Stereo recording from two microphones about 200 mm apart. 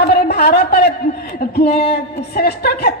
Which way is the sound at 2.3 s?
50° left (ahead or behind).